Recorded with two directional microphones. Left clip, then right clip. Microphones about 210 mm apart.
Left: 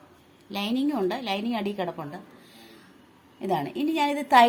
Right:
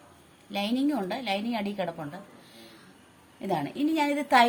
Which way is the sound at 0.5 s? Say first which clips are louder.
Left 1 dB; 20° left (ahead or behind).